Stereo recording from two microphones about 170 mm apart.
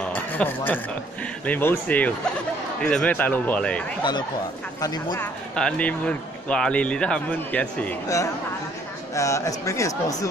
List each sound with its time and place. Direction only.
0.0 s a sound: 10° left (ahead or behind)
1.4 s speech: 10° left (ahead or behind)
4.8 s speech: 25° left (ahead or behind)
5.2 s speech: 5° left (ahead or behind)